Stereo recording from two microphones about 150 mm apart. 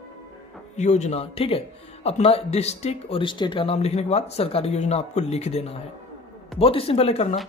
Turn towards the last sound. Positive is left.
turn(degrees=45)  # may be behind; listen again after turning